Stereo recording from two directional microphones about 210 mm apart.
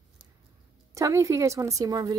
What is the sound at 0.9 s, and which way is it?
A woman's voice, 15° right (ahead or behind).